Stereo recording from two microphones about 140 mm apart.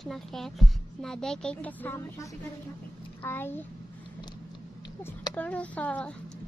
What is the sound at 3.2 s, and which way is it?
Speech, 15° left (ahead or behind).